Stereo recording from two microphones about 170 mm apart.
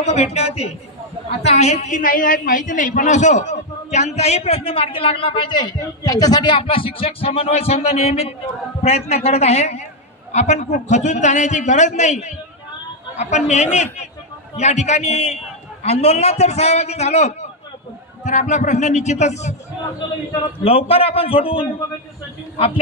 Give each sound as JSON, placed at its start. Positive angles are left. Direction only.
{"t": 0.0, "sound": "a woman's voice", "side_deg": 40}
{"t": 20.0, "sound": "a man's voice", "side_deg": 25}